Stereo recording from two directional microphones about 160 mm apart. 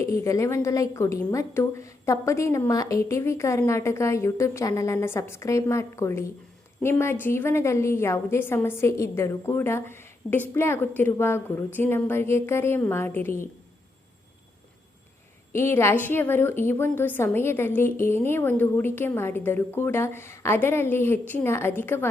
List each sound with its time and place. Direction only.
0.0 s a woman's voice: 20° left (ahead or behind)
15.5 s a woman's voice: 15° left (ahead or behind)